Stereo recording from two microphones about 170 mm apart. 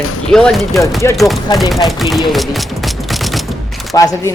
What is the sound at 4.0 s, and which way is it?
Speech, 20° left (ahead or behind).